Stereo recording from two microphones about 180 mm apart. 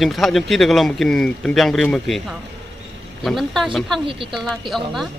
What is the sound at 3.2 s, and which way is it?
Speech, centre (ahead or behind).